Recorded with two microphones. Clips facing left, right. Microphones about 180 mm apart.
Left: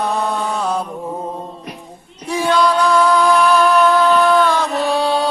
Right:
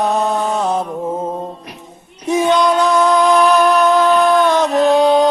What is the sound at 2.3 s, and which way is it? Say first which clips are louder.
Music: right 2 dB; 20° right (ahead or behind).